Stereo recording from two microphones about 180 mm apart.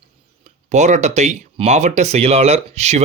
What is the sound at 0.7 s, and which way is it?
Speech, 40° right (ahead or behind).